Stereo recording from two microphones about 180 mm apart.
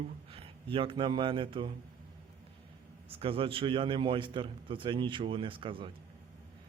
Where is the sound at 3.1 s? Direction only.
30° right (ahead or behind).